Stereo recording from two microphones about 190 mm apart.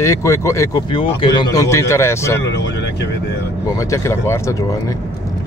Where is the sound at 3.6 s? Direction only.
15° left (ahead or behind).